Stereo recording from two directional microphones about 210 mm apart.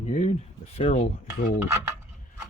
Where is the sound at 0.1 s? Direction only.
30° left (ahead or behind).